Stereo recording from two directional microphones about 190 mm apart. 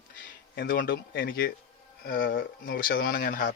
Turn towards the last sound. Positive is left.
turn(degrees=45)  # may be behind; listen again after turning